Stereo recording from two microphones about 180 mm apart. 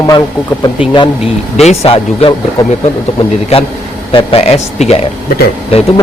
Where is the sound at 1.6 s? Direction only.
35° left (ahead or behind).